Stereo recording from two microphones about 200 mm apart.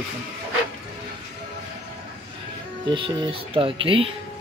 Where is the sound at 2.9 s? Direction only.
25° right (ahead or behind).